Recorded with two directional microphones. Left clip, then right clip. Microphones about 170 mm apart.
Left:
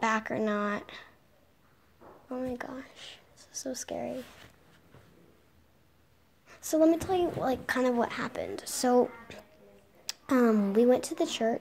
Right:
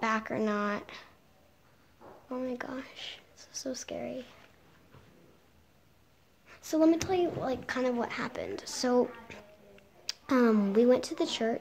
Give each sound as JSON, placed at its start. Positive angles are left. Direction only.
{"t": 0.0, "sound": "a woman's voice", "side_deg": 10}
{"t": 2.2, "sound": "speech", "side_deg": 0}
{"t": 6.4, "sound": "a woman's voice", "side_deg": 10}
{"t": 7.3, "sound": "a woman's voice", "side_deg": 25}